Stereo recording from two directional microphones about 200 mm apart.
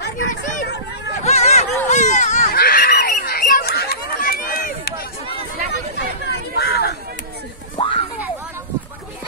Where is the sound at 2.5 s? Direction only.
50° left (ahead or behind).